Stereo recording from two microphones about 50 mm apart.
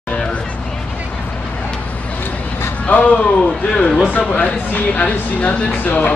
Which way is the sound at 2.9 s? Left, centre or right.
Left.